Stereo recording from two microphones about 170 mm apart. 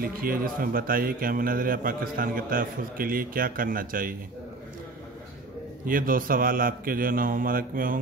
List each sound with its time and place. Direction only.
0.0 s a man's voice: 60° right (ahead or behind)
5.9 s a man's voice: 55° right (ahead or behind)